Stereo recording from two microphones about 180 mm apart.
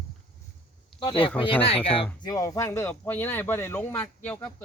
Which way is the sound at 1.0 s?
30° left (ahead or behind).